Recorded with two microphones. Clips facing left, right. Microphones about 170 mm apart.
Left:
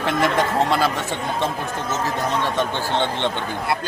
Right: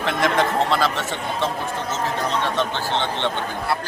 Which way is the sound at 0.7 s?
15° left (ahead or behind).